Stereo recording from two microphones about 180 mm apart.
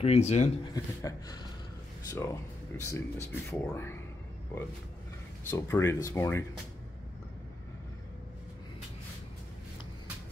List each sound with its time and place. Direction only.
0.0 s speech: 35° left (ahead or behind)
0.7 s a sound: 20° left (ahead or behind)
2.0 s speech: 15° left (ahead or behind)
5.5 s speech: 15° left (ahead or behind)